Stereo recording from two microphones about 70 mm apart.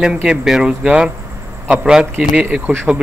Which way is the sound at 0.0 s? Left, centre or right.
Centre.